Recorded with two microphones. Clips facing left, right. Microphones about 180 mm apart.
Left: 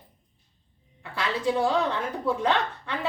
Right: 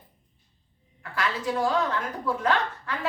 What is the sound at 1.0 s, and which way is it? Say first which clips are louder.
A woman's voice: left 2 dB; 25° left (ahead or behind).